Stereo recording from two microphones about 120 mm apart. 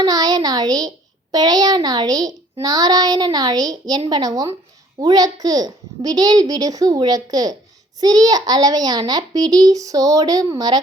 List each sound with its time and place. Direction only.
0.0 s a child's voice: 30° right (ahead or behind)